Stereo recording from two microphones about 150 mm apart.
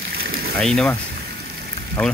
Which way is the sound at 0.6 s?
5° left (ahead or behind).